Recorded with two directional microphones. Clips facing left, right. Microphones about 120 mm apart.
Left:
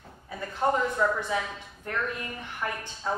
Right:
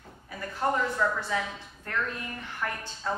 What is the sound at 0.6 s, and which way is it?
Speech, 15° left (ahead or behind).